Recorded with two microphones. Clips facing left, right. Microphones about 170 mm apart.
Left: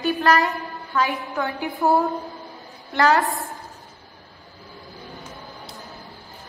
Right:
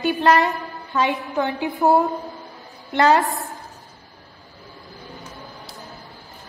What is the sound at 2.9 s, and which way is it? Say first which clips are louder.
Speech: right 2 dB; 20° right (ahead or behind).